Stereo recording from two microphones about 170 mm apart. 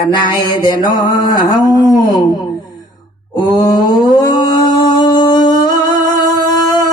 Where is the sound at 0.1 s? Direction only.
25° left (ahead or behind).